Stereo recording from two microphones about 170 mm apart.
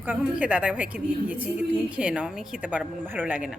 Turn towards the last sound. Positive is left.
turn(degrees=-10)  # may be behind; listen again after turning